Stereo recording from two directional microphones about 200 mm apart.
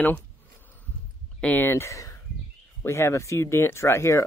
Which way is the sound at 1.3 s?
10° left (ahead or behind).